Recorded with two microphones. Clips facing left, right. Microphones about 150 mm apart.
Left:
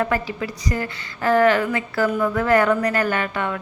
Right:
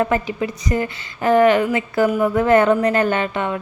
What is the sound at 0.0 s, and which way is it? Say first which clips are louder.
A woman's voice: right 3 dB; 20° right (ahead or behind).